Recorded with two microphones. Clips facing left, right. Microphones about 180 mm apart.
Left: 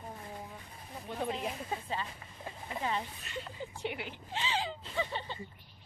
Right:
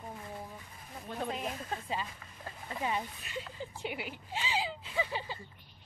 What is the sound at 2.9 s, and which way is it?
Speech, 10° right (ahead or behind).